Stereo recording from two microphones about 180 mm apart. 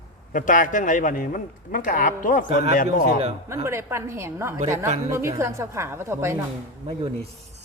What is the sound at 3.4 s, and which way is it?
A woman's voice, 15° right (ahead or behind).